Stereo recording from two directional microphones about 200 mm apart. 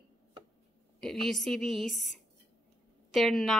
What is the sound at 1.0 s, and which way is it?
A woman's voice, centre (ahead or behind).